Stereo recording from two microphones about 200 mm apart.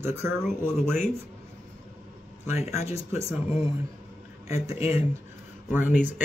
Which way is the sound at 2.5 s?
30° left (ahead or behind).